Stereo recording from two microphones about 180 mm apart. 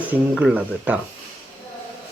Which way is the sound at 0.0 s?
5° right (ahead or behind).